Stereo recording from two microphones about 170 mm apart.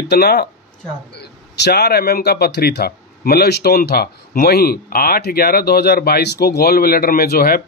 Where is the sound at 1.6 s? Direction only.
70° left (ahead or behind).